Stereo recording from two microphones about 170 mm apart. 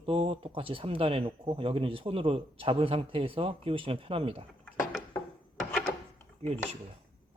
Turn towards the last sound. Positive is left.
turn(degrees=-40)  # may be behind; listen again after turning